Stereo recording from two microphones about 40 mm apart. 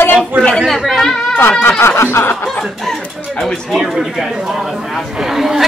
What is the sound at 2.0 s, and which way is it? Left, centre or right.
Snicker, left.